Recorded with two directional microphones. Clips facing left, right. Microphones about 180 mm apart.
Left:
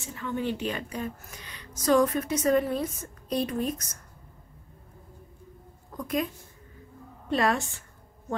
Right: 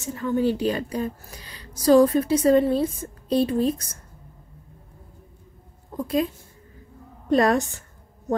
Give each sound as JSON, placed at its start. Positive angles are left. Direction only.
{"t": 0.0, "sound": "a woman's voice", "side_deg": -40}
{"t": 5.9, "sound": "a woman's voice", "side_deg": -30}
{"t": 7.2, "sound": "a woman's voice", "side_deg": -40}